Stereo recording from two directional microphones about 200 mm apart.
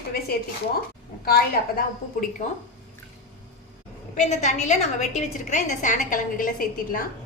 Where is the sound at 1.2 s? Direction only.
50° left (ahead or behind).